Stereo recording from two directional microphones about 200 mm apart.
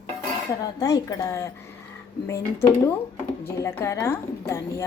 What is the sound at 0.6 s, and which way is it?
A woman's voice, 20° left (ahead or behind).